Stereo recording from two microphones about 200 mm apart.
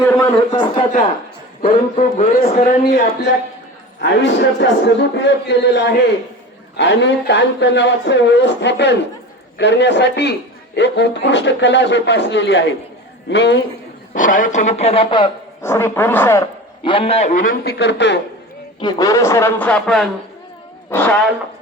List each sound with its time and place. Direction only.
0.0 s a sound: 15° left (ahead or behind)
1.6 s a man's voice: 40° left (ahead or behind); by 13.6 s 60° left (ahead or behind)
14.1 s speech: 40° left (ahead or behind); by 15.3 s 25° left (ahead or behind)
15.6 s a man's voice: 10° left (ahead or behind)
16.8 s a man's voice: 30° left (ahead or behind); by 18.2 s 60° left (ahead or behind)
18.8 s a man's voice: 20° left (ahead or behind)